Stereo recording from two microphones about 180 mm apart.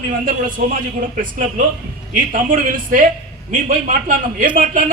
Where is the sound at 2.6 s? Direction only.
50° right (ahead or behind).